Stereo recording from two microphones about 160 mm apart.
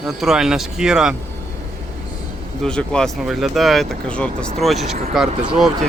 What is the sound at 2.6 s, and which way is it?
Speech, 5° left (ahead or behind).